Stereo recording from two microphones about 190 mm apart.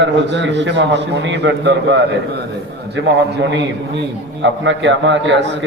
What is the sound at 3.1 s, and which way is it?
A man's voice, 65° right (ahead or behind).